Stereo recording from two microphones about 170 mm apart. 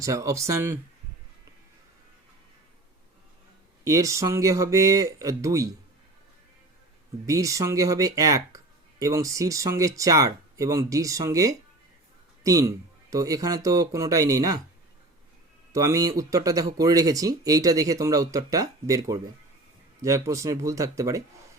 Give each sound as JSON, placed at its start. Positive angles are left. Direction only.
{"t": 0.0, "sound": "speech", "side_deg": -20}
{"t": 3.8, "sound": "speech", "side_deg": -20}
{"t": 7.3, "sound": "speech", "side_deg": -20}
{"t": 15.7, "sound": "speech", "side_deg": -20}